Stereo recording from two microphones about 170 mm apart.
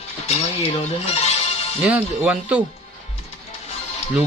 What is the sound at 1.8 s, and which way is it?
Speech, 5° right (ahead or behind).